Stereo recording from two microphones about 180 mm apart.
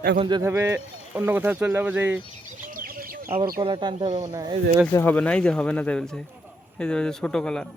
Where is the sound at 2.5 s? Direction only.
50° right (ahead or behind).